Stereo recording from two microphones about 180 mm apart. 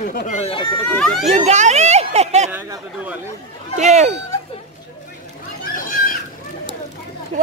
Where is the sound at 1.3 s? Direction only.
40° right (ahead or behind).